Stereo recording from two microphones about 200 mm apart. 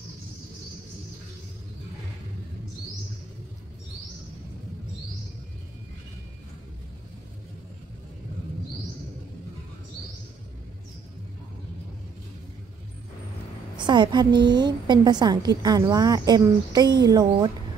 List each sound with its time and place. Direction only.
13.8 s a woman's voice: 20° right (ahead or behind)